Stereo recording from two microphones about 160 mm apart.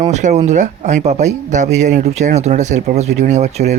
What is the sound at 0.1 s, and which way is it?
Speech, 45° right (ahead or behind).